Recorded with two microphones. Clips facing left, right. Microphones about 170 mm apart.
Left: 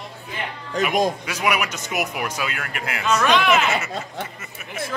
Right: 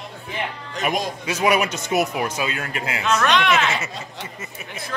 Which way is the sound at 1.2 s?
30° right (ahead or behind).